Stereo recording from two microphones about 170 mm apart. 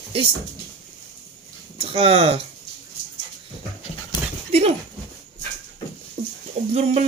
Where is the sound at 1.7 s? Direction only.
35° right (ahead or behind).